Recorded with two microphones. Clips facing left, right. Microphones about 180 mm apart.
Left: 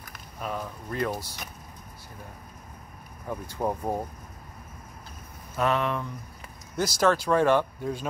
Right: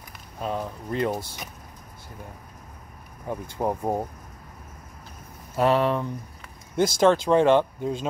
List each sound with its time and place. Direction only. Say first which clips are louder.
0.4 s speech: right 4 dB; 25° right (ahead or behind)
3.3 s speech: right 2 dB; 20° right (ahead or behind)
5.6 s speech: right 5 dB; 35° right (ahead or behind)